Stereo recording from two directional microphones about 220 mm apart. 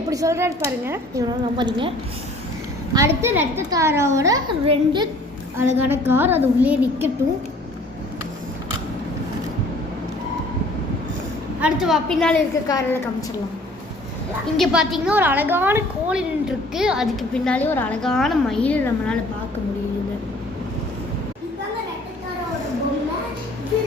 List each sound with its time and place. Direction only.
0.1 s a woman's voice: 15° right (ahead or behind)
2.9 s a woman's voice: 15° right (ahead or behind)
5.7 s a woman's voice: 10° right (ahead or behind)
11.6 s a woman's voice: centre (ahead or behind)
12.6 s a woman's voice: 15° left (ahead or behind)
14.5 s a woman's voice: centre (ahead or behind)